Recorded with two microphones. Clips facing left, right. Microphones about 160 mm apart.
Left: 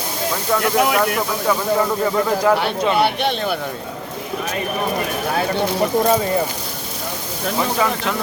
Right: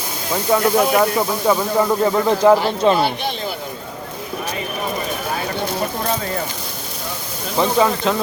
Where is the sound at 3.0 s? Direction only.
65° left (ahead or behind).